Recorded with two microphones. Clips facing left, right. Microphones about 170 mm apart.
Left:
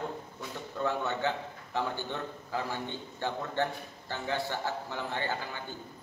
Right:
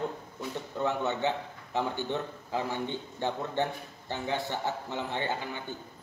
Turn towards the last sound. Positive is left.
turn(degrees=-20)  # may be behind; listen again after turning